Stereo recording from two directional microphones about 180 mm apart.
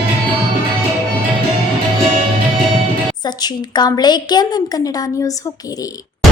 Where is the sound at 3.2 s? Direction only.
20° left (ahead or behind).